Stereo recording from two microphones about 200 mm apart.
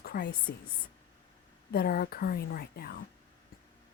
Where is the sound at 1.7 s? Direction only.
50° left (ahead or behind).